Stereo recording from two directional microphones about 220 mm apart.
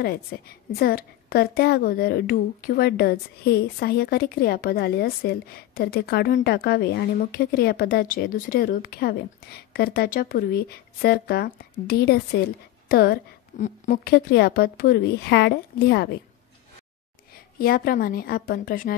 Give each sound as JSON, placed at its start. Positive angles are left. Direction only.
{"t": 0.0, "sound": "a woman's voice", "side_deg": 45}
{"t": 17.6, "sound": "a woman's voice", "side_deg": 40}